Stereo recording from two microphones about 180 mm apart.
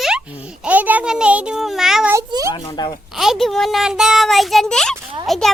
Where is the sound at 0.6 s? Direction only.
10° right (ahead or behind).